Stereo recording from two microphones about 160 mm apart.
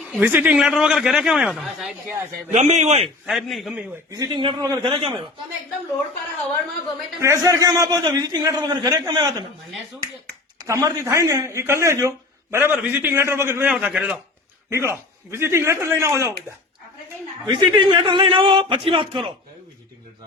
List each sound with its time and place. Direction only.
0.1 s a man's voice: 10° right (ahead or behind)
2.5 s a man's voice: 45° right (ahead or behind)
3.2 s a man's voice: centre (ahead or behind)
4.1 s a man's voice: 25° right (ahead or behind)
7.2 s a man's voice: 20° right (ahead or behind)
10.6 s speech: 20° right (ahead or behind)
17.4 s a man's voice: 30° right (ahead or behind)